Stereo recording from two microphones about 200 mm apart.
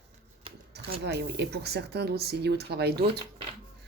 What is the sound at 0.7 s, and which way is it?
Speech, 55° right (ahead or behind).